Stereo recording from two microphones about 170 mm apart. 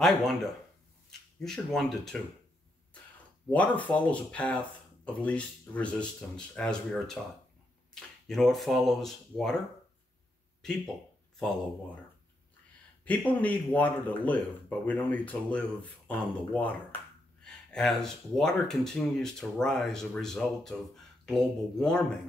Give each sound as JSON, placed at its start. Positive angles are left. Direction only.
{"t": 0.0, "sound": "speech", "side_deg": 0}
{"t": 1.4, "sound": "speech", "side_deg": 5}
{"t": 3.4, "sound": "speech", "side_deg": 10}
{"t": 13.0, "sound": "speech", "side_deg": 10}